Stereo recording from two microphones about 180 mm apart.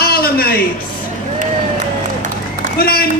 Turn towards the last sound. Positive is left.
turn(degrees=55)  # may be behind; listen again after turning